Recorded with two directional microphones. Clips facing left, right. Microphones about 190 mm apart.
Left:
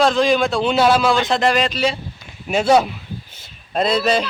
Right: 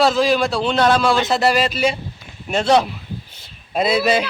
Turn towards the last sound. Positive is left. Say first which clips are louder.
# even
turn(degrees=-10)  # may be behind; listen again after turning